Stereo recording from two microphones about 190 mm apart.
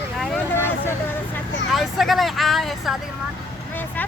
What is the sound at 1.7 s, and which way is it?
Vehicle, centre (ahead or behind).